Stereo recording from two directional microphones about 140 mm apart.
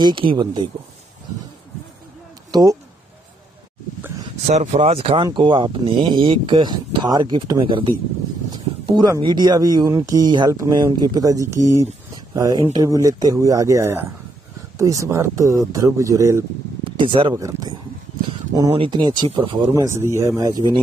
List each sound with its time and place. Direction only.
0.0 s speech: 35° right (ahead or behind)
2.5 s speech: 25° right (ahead or behind)
4.5 s speech: 50° right (ahead or behind); by 16.4 s 20° right (ahead or behind)
16.8 s speech: 35° right (ahead or behind)
18.7 s speech: 35° right (ahead or behind)
19.7 s speech: 20° right (ahead or behind)